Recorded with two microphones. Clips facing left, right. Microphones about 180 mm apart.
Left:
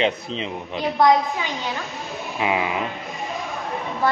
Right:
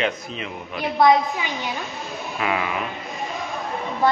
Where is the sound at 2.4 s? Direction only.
20° left (ahead or behind).